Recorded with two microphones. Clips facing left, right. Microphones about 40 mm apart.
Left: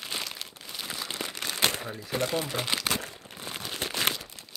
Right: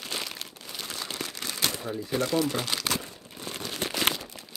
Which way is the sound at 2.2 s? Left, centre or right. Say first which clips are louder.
Right 3 dB; left.